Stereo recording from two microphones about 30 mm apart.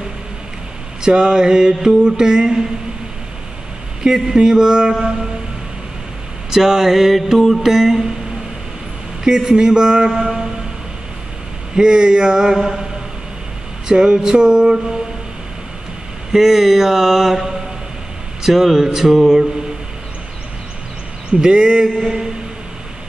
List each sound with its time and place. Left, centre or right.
1.1 s mantra: right
4.0 s mantra: right
6.5 s speech: centre
7.7 s speech: centre
9.2 s mantra: right
10.2 s a sound: right
11.7 s mantra: right
13.8 s mantra: right
16.3 s speech: centre
21.3 s mantra: right
21.8 s speech: centre